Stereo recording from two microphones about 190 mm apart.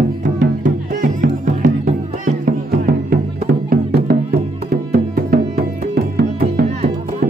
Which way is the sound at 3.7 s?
50° right (ahead or behind).